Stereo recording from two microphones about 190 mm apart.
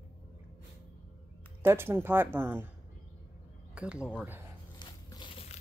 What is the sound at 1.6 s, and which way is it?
A woman's voice, 10° right (ahead or behind).